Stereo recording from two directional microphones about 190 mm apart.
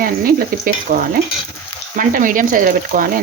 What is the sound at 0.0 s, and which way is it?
Speech, 50° right (ahead or behind).